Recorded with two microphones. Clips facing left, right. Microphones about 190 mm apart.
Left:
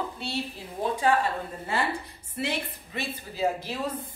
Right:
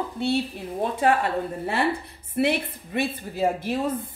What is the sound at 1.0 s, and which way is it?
A woman's voice, 60° right (ahead or behind).